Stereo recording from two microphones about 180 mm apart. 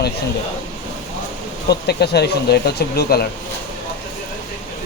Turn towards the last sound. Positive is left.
turn(degrees=60)  # may be behind; listen again after turning